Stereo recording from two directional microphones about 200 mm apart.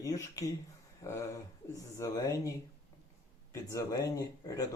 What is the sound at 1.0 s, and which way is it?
Speech, 15° left (ahead or behind).